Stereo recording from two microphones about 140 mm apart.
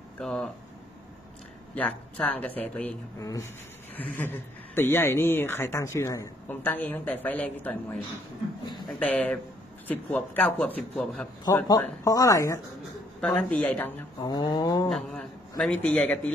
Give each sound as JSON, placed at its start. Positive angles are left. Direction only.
{"t": 0.2, "sound": "speech", "side_deg": 5}
{"t": 1.8, "sound": "speech", "side_deg": 10}
{"t": 3.2, "sound": "speech", "side_deg": 25}
{"t": 4.0, "sound": "speech", "side_deg": 10}
{"t": 11.4, "sound": "speech", "side_deg": 25}
{"t": 13.2, "sound": "speech", "side_deg": 5}
{"t": 14.2, "sound": "mantra", "side_deg": 35}
{"t": 14.9, "sound": "speech", "side_deg": 5}